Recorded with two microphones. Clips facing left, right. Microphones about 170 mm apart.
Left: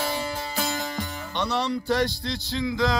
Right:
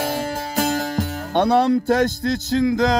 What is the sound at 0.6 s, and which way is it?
Speech, 45° right (ahead or behind).